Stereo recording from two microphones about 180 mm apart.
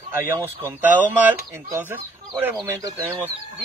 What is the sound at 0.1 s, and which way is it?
Speech, 15° right (ahead or behind).